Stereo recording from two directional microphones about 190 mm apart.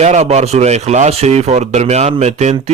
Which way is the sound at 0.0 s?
35° right (ahead or behind).